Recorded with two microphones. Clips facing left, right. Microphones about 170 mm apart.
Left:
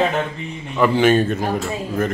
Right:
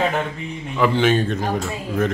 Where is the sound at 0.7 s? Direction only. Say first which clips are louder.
Left 3 dB; centre (ahead or behind).